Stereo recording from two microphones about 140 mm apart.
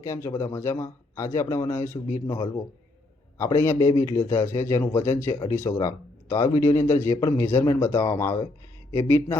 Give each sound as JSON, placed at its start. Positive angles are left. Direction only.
{"t": 0.0, "sound": "speech", "side_deg": 20}